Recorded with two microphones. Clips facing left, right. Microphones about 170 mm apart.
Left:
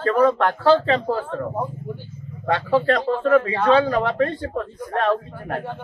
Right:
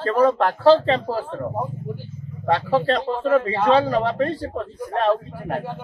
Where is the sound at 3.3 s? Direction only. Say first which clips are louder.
Even; 30° right (ahead or behind).